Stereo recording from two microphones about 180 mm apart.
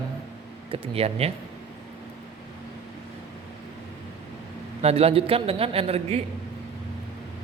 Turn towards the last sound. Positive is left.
turn(degrees=-35)  # may be behind; listen again after turning